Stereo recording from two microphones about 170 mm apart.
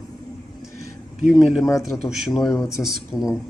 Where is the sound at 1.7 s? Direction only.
20° left (ahead or behind).